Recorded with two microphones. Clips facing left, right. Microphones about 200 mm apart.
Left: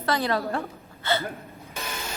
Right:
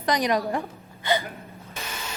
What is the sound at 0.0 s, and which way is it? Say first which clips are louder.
A woman's voice: right 2 dB; 15° right (ahead or behind).